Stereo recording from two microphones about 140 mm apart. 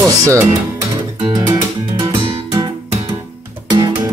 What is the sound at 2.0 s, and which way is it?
Music, 35° right (ahead or behind).